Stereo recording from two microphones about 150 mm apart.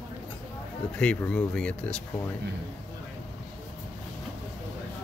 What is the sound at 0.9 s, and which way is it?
Speech, 5° left (ahead or behind).